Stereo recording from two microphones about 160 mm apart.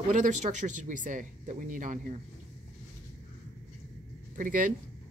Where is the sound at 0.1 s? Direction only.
50° right (ahead or behind).